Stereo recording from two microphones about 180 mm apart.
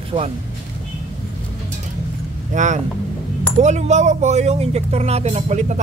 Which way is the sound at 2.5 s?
40° right (ahead or behind).